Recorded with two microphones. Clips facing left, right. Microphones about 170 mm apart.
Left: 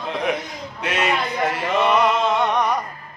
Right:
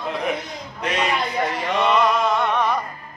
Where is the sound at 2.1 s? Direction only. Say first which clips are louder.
Left 1 dB; 20° left (ahead or behind).